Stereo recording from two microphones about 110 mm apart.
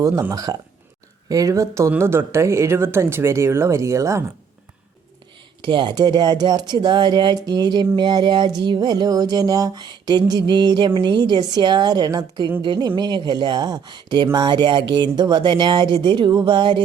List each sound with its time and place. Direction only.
0.3 s speech: 35° right (ahead or behind)
5.6 s speech: 45° right (ahead or behind)